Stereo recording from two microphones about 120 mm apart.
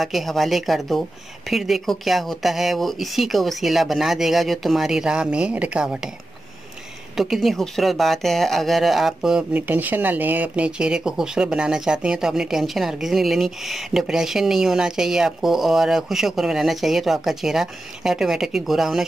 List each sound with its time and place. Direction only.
0.0 s speech: centre (ahead or behind)
7.2 s speech: centre (ahead or behind)